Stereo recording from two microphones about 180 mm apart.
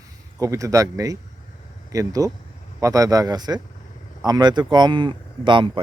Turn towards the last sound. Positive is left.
turn(degrees=-25)  # may be behind; listen again after turning